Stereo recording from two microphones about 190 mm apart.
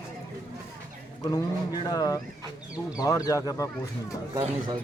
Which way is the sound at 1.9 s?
20° left (ahead or behind).